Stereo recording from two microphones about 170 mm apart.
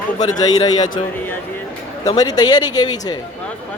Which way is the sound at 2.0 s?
25° left (ahead or behind).